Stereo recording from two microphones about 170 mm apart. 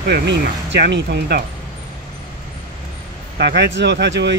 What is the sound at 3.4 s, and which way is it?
Speech, 85° right.